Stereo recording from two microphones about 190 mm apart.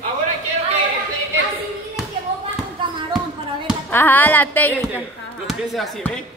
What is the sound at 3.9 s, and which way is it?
A woman's voice, 10° left (ahead or behind).